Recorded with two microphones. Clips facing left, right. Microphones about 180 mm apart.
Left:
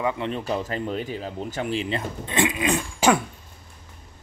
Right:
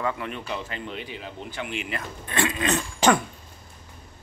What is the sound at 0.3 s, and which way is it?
Speech, 40° left (ahead or behind).